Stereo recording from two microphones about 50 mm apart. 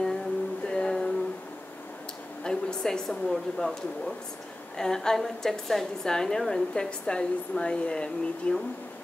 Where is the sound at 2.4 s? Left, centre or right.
Centre.